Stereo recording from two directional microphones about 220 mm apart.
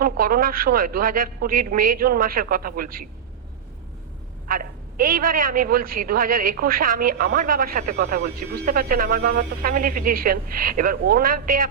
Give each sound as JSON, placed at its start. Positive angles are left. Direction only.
{"t": 0.0, "sound": "a woman's voice", "side_deg": -40}
{"t": 4.4, "sound": "a woman's voice", "side_deg": -40}